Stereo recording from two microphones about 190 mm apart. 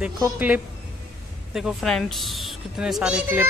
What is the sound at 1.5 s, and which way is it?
Speech, centre (ahead or behind).